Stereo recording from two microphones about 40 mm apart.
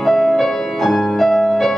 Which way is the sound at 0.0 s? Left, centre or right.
Centre.